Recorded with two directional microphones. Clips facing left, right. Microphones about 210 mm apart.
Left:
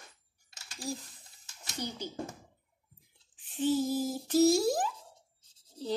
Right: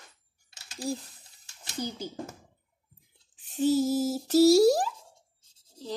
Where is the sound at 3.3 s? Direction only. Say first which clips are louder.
Right 4 dB; 40° right (ahead or behind).